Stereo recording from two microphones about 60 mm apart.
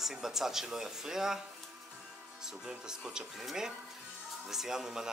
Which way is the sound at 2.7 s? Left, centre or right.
Centre.